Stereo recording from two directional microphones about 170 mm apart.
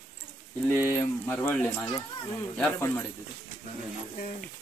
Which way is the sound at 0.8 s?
10° left (ahead or behind).